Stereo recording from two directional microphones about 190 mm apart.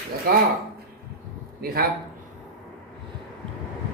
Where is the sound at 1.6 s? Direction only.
50° right (ahead or behind).